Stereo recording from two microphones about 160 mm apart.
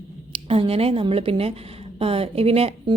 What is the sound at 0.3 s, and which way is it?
A woman's voice, 35° right (ahead or behind).